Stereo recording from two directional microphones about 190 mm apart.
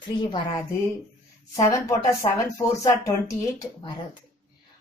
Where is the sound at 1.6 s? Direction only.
15° left (ahead or behind).